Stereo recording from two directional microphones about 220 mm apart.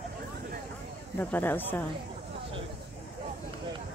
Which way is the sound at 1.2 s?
10° left (ahead or behind).